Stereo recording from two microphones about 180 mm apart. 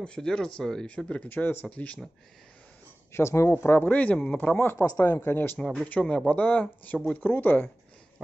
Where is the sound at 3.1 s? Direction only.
15° left (ahead or behind).